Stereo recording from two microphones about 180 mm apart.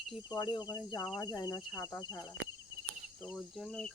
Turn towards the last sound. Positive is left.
turn(degrees=0)  # may be behind; listen again after turning